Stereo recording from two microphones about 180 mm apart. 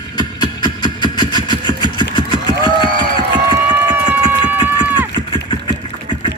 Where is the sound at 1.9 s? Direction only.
25° left (ahead or behind).